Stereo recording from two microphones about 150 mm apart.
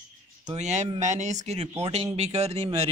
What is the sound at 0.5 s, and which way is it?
Speech, 50° right (ahead or behind).